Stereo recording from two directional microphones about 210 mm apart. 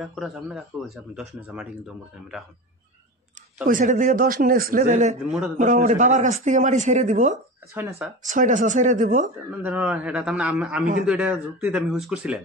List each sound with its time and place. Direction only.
0.0 s speech: centre (ahead or behind)
3.6 s speech: 40° right (ahead or behind)
7.7 s a man's voice: 10° right (ahead or behind)
8.3 s speech: 35° right (ahead or behind)
9.6 s a man's voice: 10° right (ahead or behind)